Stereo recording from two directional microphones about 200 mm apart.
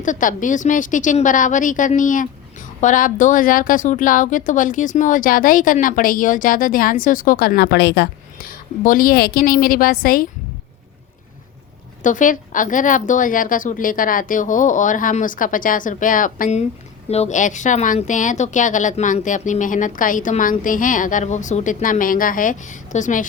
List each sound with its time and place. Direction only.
0.0 s a woman's voice: 40° left (ahead or behind)
12.0 s speech: 40° left (ahead or behind)